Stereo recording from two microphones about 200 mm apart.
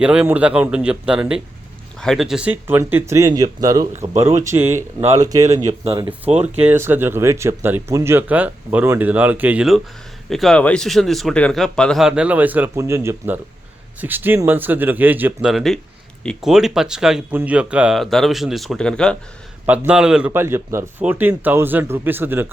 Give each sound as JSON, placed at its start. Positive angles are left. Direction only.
{"t": 0.0, "sound": "speech", "side_deg": -5}
{"t": 19.6, "sound": "speech", "side_deg": -5}